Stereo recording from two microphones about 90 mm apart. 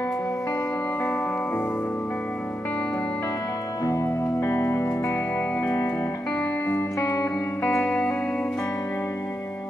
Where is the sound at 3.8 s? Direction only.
35° left (ahead or behind).